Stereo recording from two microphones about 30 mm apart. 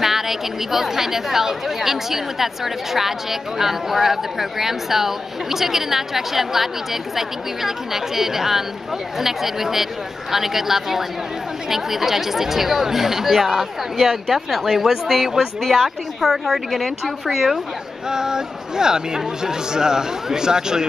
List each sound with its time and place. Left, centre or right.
0.0 s a woman's voice: centre
18.1 s speech: right